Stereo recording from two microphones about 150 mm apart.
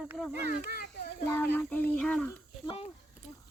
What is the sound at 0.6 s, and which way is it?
Children playing, 75° left (ahead or behind).